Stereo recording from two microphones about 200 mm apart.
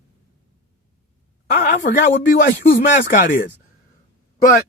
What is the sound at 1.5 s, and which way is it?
Speech, 50° left (ahead or behind).